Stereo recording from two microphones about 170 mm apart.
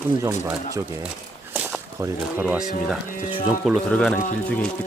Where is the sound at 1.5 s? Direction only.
10° right (ahead or behind).